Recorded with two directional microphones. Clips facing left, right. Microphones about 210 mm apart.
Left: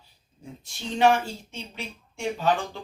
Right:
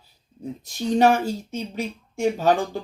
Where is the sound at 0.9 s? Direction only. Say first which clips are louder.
Right 3 dB; 40° right (ahead or behind).